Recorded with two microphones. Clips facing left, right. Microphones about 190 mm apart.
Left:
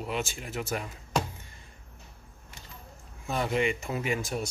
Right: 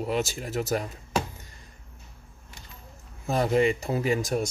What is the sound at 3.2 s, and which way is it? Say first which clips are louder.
Speech: right 5 dB; 40° right (ahead or behind).